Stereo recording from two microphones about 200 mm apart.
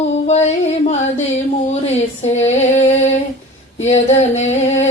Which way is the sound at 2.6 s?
35° left (ahead or behind).